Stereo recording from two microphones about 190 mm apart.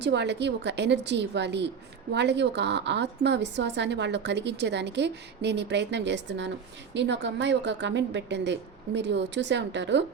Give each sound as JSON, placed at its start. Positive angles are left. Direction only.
{"t": 0.0, "sound": "a woman's voice", "side_deg": -65}